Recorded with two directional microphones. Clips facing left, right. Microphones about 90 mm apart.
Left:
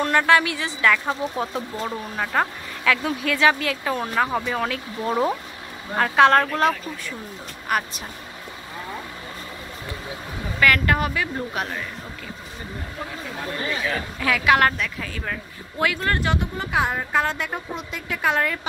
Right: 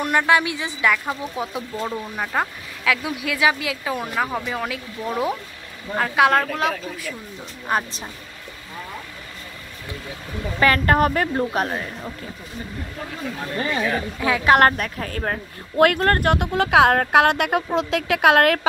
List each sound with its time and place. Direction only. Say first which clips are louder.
0.0 s speech: even; 15° right (ahead or behind)
7.6 s a woman's voice: right 1 dB; 25° right (ahead or behind)
10.6 s speech: right 2 dB; 30° right (ahead or behind)
11.0 s speech: right 6 dB; 45° right (ahead or behind)
13.8 s a woman's voice: right 2 dB; 25° right (ahead or behind)
14.8 s a woman's voice: right 3 dB; 45° right (ahead or behind)
16.5 s a woman's voice: right 8 dB; 90° right